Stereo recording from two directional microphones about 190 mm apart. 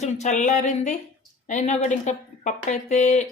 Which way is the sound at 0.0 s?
40° left (ahead or behind).